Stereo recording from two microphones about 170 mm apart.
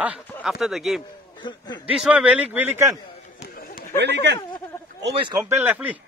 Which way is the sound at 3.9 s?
85° right.